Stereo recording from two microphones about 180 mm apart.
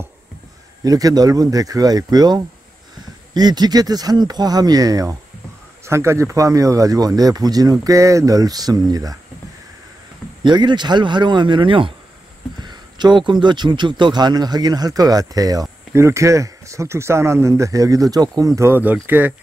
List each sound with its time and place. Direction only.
0.8 s speech: 20° right (ahead or behind)
10.4 s speech: 25° right (ahead or behind); by 19.3 s 10° right (ahead or behind)